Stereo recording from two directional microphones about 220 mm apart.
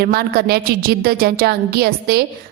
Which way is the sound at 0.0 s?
45° right (ahead or behind).